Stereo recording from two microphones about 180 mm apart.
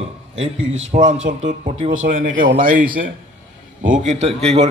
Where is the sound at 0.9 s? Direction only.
40° right (ahead or behind).